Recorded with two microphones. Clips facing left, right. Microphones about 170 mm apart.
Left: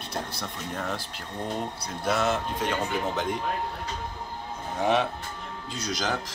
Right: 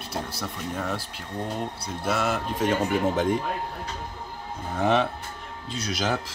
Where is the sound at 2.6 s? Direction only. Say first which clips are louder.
Right 7 dB; 50° right (ahead or behind).